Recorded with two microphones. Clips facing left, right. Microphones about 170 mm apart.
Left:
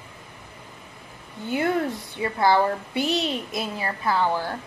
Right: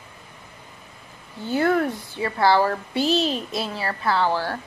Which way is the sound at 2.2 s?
20° left (ahead or behind).